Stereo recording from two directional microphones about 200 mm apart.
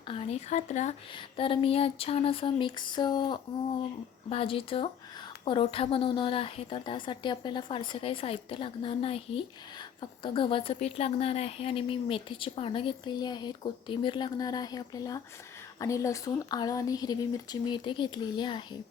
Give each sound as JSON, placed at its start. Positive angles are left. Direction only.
{"t": 0.1, "sound": "a woman's voice", "side_deg": 30}